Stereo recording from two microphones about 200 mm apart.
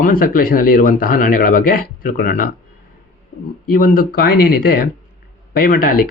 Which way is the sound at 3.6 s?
45° left (ahead or behind).